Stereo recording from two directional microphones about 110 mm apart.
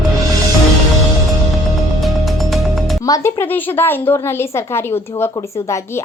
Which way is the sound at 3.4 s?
15° left (ahead or behind).